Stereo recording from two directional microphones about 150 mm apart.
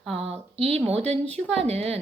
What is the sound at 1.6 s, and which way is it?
Speech, 45° right (ahead or behind).